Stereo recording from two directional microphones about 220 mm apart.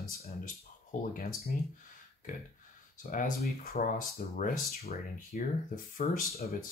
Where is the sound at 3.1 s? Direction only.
35° left (ahead or behind).